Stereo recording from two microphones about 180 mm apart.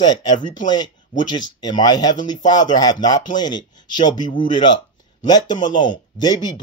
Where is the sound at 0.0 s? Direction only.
25° left (ahead or behind).